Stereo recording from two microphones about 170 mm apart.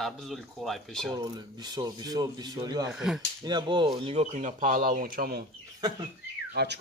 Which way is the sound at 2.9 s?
5° right (ahead or behind).